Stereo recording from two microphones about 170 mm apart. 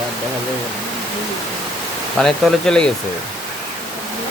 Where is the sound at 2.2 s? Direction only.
Centre (ahead or behind).